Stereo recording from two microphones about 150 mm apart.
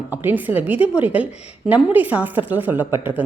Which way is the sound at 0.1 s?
15° right (ahead or behind).